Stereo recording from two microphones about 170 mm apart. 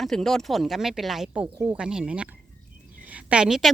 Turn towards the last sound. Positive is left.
turn(degrees=0)  # may be behind; listen again after turning